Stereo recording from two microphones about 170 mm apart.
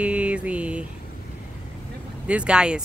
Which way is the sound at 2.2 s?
5° right (ahead or behind).